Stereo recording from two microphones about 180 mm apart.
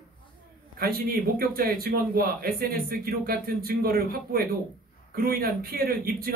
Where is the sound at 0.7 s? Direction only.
55° right (ahead or behind).